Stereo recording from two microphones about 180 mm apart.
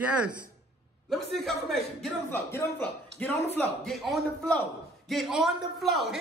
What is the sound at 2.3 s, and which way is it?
A man's voice, 15° left (ahead or behind).